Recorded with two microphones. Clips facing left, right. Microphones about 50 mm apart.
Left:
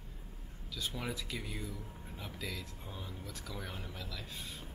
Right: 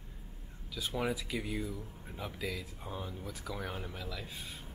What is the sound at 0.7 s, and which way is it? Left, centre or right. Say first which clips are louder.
Speech: right 5 dB; centre.